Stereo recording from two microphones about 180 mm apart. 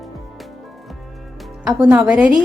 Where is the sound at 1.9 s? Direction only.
10° right (ahead or behind).